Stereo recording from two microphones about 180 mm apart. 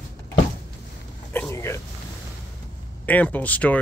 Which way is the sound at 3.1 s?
10° left (ahead or behind).